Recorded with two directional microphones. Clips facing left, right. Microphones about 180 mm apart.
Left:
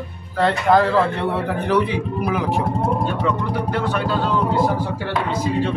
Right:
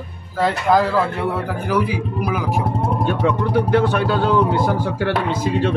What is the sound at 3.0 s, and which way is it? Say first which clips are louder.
A man's voice: right 3 dB; 60° right (ahead or behind).